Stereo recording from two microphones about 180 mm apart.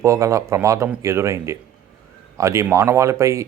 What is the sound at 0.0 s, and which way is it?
Speech, 15° right (ahead or behind).